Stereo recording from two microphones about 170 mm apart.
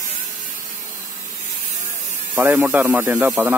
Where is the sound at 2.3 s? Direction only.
10° right (ahead or behind).